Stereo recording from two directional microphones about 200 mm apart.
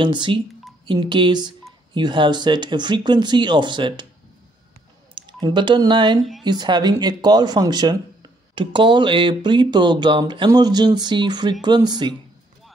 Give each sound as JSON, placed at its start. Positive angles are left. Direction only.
{"t": 0.0, "sound": "speech", "side_deg": -25}
{"t": 5.1, "sound": "speech", "side_deg": -25}